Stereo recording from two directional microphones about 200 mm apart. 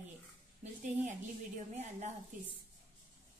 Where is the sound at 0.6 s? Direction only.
35° right (ahead or behind).